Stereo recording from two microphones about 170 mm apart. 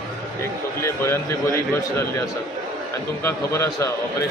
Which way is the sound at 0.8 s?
15° left (ahead or behind).